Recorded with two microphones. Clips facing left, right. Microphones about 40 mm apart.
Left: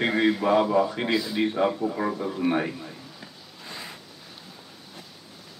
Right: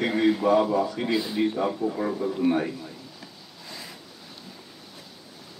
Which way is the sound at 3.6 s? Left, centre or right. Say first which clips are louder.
Left 2 dB; left.